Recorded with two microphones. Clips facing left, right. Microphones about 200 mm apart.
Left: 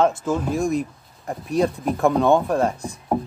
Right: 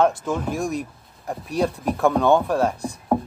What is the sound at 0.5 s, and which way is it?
Speech, 10° right (ahead or behind).